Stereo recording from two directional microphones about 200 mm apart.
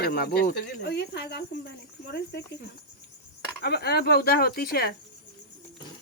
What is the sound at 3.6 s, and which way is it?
Speech, 50° left (ahead or behind).